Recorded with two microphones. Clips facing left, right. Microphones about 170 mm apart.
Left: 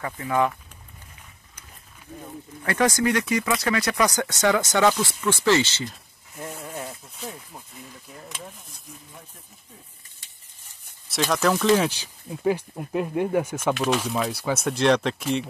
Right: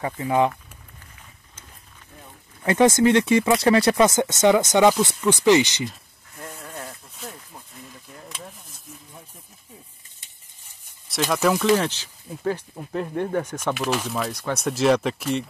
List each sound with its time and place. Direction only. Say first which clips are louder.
0.0 s speech: right 3 dB; 20° right (ahead or behind)
2.6 s speech: right 5 dB; 20° right (ahead or behind)
6.4 s rub: left 3 dB; 10° left (ahead or behind)
8.2 s speech: even; centre (ahead or behind)
11.1 s speech: right 1 dB; centre (ahead or behind)